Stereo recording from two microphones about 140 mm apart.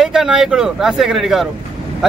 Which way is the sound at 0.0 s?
5° right (ahead or behind).